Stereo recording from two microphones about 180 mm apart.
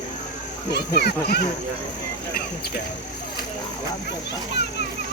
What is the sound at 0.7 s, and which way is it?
Speech, 65° left (ahead or behind).